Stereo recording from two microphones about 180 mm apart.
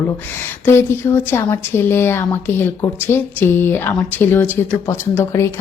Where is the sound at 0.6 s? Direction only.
15° left (ahead or behind).